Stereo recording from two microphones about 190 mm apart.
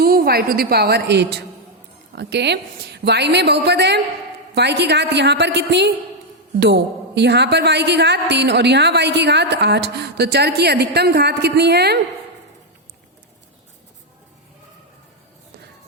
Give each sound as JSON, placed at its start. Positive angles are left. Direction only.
{"t": 0.0, "sound": "a woman's voice", "side_deg": -50}